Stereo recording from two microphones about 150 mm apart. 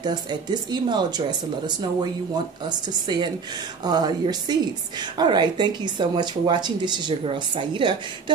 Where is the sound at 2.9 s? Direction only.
25° right (ahead or behind).